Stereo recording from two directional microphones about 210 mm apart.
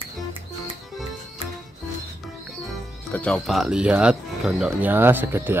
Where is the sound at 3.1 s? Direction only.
5° left (ahead or behind).